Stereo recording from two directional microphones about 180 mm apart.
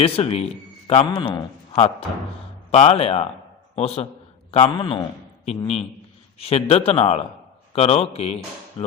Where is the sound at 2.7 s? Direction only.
35° left (ahead or behind).